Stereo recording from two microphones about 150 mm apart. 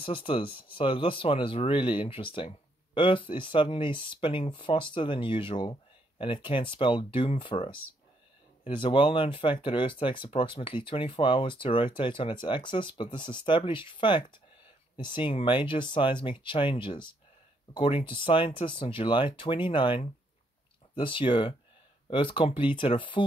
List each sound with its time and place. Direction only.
0.0 s speech: 35° left (ahead or behind)